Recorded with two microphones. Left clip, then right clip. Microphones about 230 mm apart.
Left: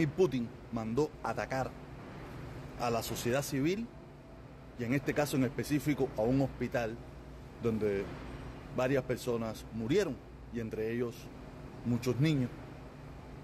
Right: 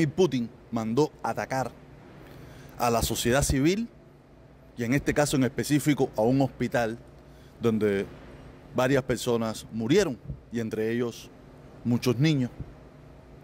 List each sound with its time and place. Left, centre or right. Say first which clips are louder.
0.0 s a man's voice: right 6 dB; right
2.8 s a man's voice: right 8 dB; right